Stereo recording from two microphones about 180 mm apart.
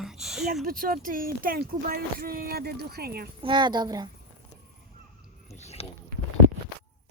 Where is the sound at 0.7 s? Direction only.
55° right (ahead or behind).